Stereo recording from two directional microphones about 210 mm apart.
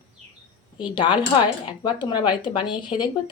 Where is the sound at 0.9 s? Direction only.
25° left (ahead or behind).